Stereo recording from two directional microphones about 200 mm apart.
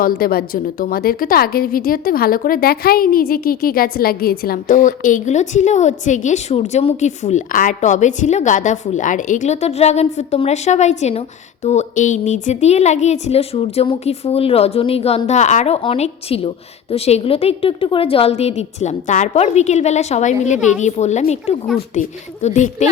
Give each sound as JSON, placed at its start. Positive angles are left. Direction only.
{"t": 0.0, "sound": "a woman's voice", "side_deg": 50}